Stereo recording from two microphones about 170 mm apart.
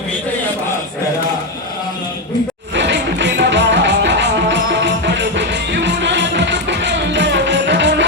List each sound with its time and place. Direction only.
2.7 s music: 90° right